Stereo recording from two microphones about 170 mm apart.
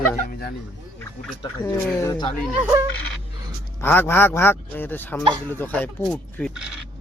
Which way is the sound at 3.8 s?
10° left (ahead or behind).